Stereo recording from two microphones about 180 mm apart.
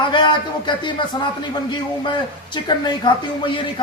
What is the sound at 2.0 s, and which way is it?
Speech, 25° left (ahead or behind).